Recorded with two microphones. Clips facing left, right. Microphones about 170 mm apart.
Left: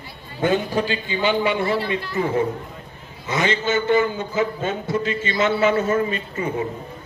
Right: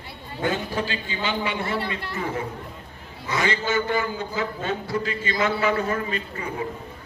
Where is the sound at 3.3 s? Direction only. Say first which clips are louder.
Left 3 dB; 20° left (ahead or behind).